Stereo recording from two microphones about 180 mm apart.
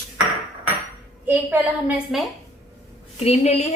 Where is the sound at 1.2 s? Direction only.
10° right (ahead or behind).